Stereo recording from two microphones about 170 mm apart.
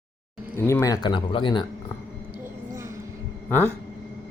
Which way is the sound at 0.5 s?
15° left (ahead or behind).